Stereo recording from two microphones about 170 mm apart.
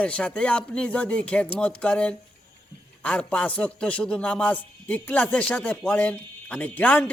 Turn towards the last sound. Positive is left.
turn(degrees=10)  # may be behind; listen again after turning